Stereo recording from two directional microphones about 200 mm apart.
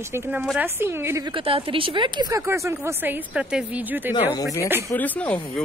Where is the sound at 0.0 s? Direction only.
10° right (ahead or behind).